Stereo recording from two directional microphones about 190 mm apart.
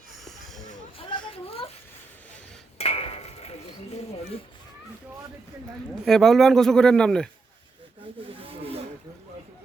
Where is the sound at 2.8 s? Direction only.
30° left (ahead or behind).